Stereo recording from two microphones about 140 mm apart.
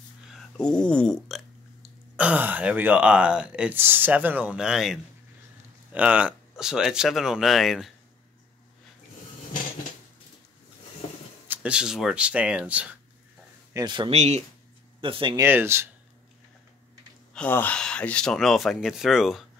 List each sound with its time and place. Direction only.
0.7 s speech: 5° left (ahead or behind)
11.4 s speech: 10° right (ahead or behind)
13.7 s speech: 35° right (ahead or behind)
14.1 s speech: 50° right (ahead or behind)
15.0 s speech: 40° right (ahead or behind)
15.3 s speech: 15° right (ahead or behind)
17.3 s speech: 10° left (ahead or behind)